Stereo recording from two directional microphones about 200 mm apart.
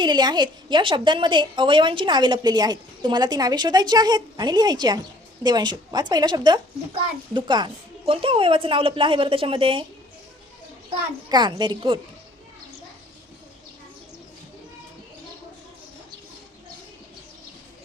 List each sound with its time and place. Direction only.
0.0 s a woman's voice: 20° right (ahead or behind)
10.8 s a woman's voice: 20° right (ahead or behind)